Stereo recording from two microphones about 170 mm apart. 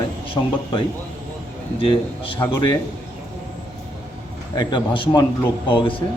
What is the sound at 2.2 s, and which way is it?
Speech, 30° left (ahead or behind).